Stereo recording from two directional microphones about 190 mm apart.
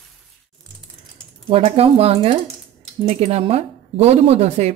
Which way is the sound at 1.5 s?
30° right (ahead or behind).